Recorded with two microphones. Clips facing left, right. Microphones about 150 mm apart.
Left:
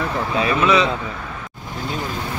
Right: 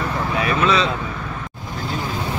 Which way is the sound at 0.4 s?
20° left (ahead or behind).